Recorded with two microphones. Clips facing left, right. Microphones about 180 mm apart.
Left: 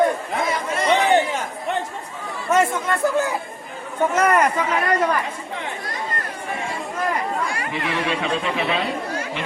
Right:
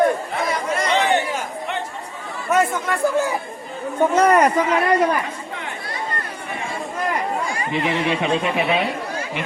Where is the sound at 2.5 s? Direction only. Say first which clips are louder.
Even; 10° right (ahead or behind).